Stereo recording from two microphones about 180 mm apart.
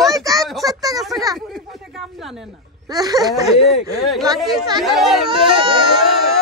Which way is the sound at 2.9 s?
20° right (ahead or behind).